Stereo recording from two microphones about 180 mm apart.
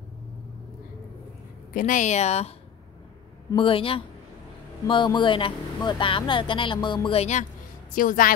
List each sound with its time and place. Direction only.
1.7 s speech: 50° left (ahead or behind)
3.5 s speech: 30° left (ahead or behind)
7.9 s a woman's voice: 50° left (ahead or behind)